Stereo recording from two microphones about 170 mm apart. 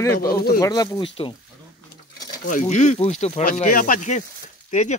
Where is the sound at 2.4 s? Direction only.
45° left (ahead or behind).